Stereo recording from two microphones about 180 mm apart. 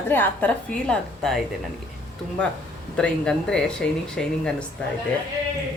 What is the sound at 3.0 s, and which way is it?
Speech, 5° left (ahead or behind).